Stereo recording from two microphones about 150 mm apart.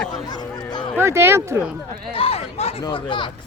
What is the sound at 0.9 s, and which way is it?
Speech, 15° right (ahead or behind).